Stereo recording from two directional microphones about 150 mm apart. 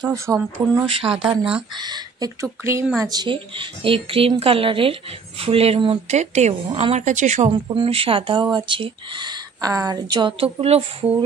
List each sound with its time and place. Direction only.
0.0 s speech: 20° right (ahead or behind)
0.8 s speech: 35° right (ahead or behind); by 7.5 s 50° right (ahead or behind)
7.7 s speech: 40° right (ahead or behind)